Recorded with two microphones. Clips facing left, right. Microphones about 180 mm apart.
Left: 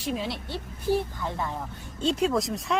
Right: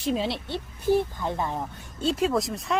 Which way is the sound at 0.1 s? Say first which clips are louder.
Right 4 dB; 30° right (ahead or behind).